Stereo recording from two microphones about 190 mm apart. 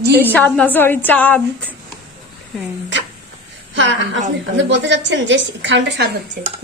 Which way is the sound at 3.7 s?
75° right (ahead or behind).